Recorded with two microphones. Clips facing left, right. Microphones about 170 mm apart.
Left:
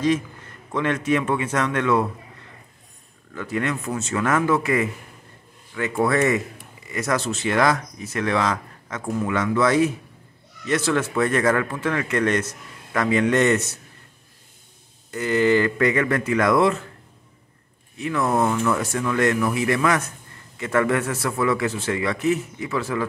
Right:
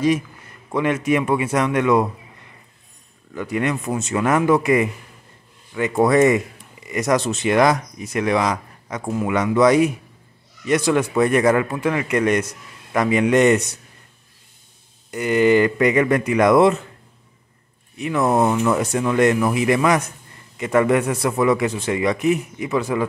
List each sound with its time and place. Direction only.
0.0 s a man's voice: 10° right (ahead or behind)
3.3 s speech: 15° right (ahead or behind)
15.0 s speech: 15° right (ahead or behind)
17.9 s speech: 20° right (ahead or behind)